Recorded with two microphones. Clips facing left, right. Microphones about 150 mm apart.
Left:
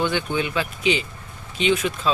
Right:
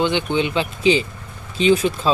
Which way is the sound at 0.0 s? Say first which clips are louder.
Right 4 dB; 20° right (ahead or behind).